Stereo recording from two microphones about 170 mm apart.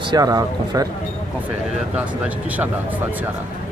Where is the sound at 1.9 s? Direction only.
10° right (ahead or behind).